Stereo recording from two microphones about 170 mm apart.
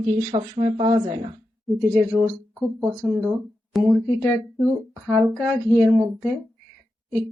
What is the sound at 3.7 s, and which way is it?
Speech, centre (ahead or behind).